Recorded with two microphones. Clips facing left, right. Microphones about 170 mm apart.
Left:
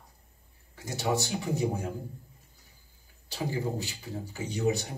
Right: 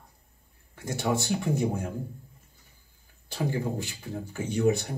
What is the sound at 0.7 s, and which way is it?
Speech, 55° right (ahead or behind).